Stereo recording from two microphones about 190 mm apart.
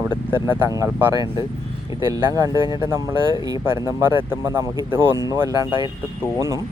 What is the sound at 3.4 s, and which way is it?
Speech, 15° right (ahead or behind).